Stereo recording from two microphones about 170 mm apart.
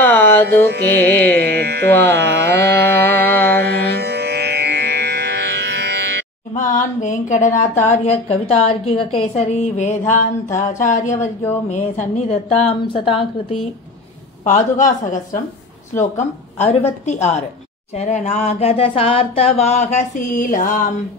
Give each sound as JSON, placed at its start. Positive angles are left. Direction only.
{"t": 0.0, "sound": "music", "side_deg": 10}
{"t": 0.6, "sound": "carnatic music", "side_deg": -80}
{"t": 1.0, "sound": "carnatic music", "side_deg": 10}
{"t": 1.3, "sound": "carnatic music", "side_deg": -75}
{"t": 2.9, "sound": "music", "side_deg": 10}
{"t": 3.6, "sound": "music", "side_deg": -90}
{"t": 6.5, "sound": "speech", "side_deg": 50}
{"t": 12.4, "sound": "a sound", "side_deg": 35}
{"t": 14.4, "sound": "speech", "side_deg": 45}
{"t": 17.9, "sound": "a sound", "side_deg": 40}